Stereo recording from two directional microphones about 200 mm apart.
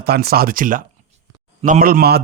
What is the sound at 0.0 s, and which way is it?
Speech, 50° right (ahead or behind).